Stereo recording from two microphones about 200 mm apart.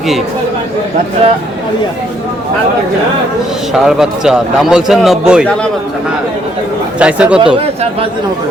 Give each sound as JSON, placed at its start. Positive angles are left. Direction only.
{"t": 3.7, "sound": "a man's voice", "side_deg": -5}
{"t": 7.0, "sound": "speech", "side_deg": -5}
{"t": 7.4, "sound": "speech", "side_deg": -30}